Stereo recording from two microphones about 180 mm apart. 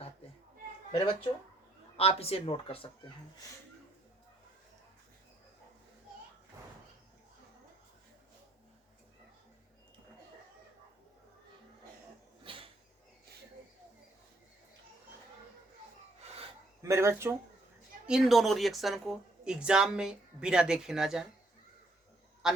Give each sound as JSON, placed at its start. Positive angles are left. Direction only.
{"t": 0.9, "sound": "speech", "side_deg": 30}
{"t": 12.4, "sound": "a sound", "side_deg": -30}
{"t": 16.8, "sound": "speech", "side_deg": -15}
{"t": 18.0, "sound": "a woman's voice", "side_deg": 0}
{"t": 22.4, "sound": "a man's voice", "side_deg": -5}